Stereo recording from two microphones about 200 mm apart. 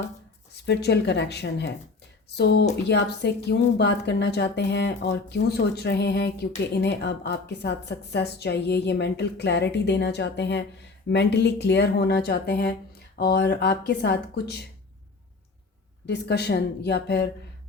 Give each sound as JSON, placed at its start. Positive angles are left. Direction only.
{"t": 0.5, "sound": "a woman's voice", "side_deg": 55}
{"t": 16.0, "sound": "a woman's voice", "side_deg": 55}